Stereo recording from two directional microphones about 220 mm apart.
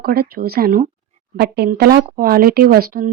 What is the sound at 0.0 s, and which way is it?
Speech, 45° right (ahead or behind).